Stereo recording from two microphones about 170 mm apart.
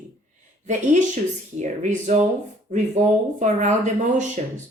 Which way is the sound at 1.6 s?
45° right (ahead or behind).